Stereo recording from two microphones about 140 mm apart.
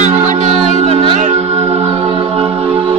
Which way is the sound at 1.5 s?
20° right (ahead or behind).